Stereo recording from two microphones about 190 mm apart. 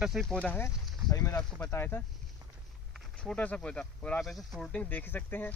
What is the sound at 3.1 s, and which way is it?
Speech, 5° left (ahead or behind).